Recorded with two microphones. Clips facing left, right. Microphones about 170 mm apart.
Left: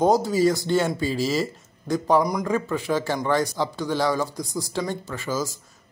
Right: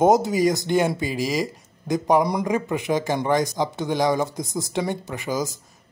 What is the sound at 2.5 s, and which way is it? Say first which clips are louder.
Speech: right 1 dB; 20° right (ahead or behind).